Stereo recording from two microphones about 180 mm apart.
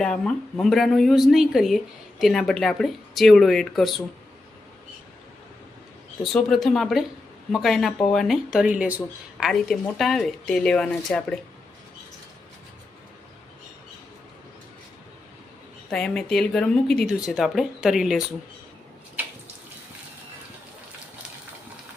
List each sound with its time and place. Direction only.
0.0 s speech: 5° left (ahead or behind)
6.2 s speech: centre (ahead or behind)
15.9 s speech: 5° left (ahead or behind)